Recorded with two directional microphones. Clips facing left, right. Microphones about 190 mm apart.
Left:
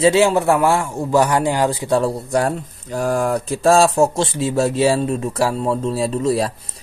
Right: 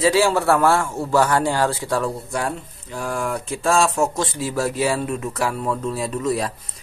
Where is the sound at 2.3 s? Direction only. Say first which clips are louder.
Left 6 dB; 40° left (ahead or behind).